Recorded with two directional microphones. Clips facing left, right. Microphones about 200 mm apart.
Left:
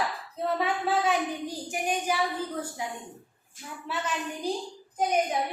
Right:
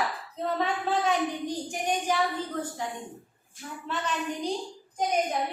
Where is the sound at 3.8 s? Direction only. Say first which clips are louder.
Right 1 dB; 10° left (ahead or behind).